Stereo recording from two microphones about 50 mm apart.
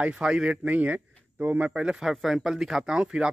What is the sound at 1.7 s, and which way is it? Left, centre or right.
Speech, centre.